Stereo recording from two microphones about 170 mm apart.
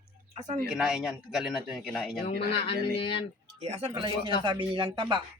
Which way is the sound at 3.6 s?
35° right (ahead or behind).